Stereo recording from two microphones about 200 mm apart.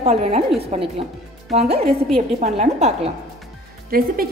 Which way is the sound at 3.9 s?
50° right (ahead or behind).